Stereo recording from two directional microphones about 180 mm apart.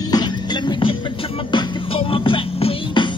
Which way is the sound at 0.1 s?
25° left (ahead or behind).